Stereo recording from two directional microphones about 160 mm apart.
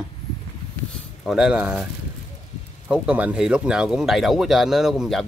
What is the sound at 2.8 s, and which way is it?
Speech, 5° right (ahead or behind).